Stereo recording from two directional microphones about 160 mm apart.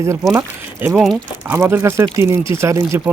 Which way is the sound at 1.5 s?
15° right (ahead or behind).